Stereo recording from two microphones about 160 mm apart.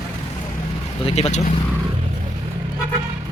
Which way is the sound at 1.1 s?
40° left (ahead or behind).